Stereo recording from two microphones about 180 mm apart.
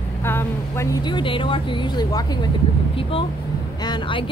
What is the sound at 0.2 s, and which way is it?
Vehicle, 15° left (ahead or behind).